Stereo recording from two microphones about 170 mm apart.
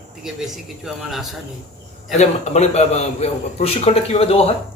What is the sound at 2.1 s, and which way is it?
A man's voice, 40° left (ahead or behind).